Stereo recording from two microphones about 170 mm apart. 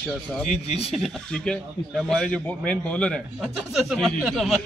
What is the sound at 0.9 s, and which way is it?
Speech, centre (ahead or behind).